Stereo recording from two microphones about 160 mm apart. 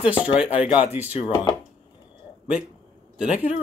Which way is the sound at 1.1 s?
40° left (ahead or behind).